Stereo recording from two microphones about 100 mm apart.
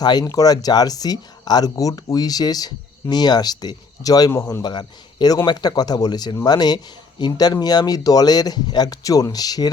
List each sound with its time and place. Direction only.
0.0 s speech: 45° left (ahead or behind)
4.3 s a man's voice: 30° left (ahead or behind)
4.6 s speech: 45° left (ahead or behind)